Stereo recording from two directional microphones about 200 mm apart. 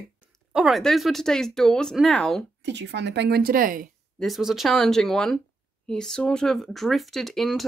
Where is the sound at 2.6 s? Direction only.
60° right (ahead or behind); by 3.9 s 45° right (ahead or behind).